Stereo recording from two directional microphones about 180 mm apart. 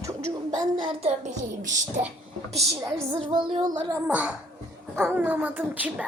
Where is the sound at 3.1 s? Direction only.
25° right (ahead or behind).